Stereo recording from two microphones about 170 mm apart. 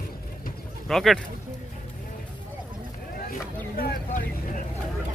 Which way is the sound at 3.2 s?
55° left (ahead or behind).